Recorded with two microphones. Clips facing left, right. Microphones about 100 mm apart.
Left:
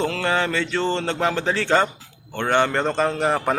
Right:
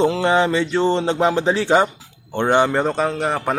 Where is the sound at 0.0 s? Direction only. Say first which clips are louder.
Right 6 dB; 20° right (ahead or behind).